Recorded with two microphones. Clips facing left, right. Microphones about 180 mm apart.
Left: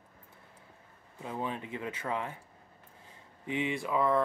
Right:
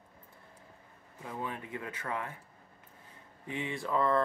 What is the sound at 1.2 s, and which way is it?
Speech, 20° left (ahead or behind).